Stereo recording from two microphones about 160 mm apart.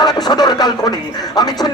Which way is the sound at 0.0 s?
25° left (ahead or behind).